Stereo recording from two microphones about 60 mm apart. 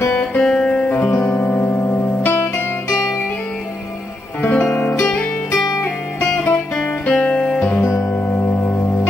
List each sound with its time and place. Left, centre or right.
0.2 s music: centre
4.4 s music: left
8.1 s music: left